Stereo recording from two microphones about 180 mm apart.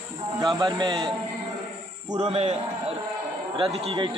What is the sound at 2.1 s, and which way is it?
Speech, 40° right (ahead or behind).